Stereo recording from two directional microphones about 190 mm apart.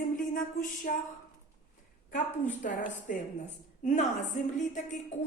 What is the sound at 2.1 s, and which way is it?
A woman's voice, 45° left (ahead or behind).